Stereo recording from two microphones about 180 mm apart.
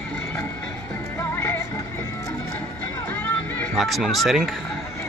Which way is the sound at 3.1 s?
10° left (ahead or behind).